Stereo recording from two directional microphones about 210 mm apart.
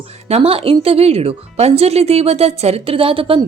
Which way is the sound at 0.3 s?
30° right (ahead or behind).